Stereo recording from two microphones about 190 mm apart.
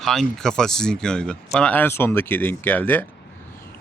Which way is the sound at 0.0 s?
Centre (ahead or behind).